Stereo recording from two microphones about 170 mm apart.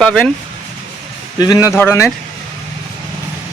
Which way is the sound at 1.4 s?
20° left (ahead or behind).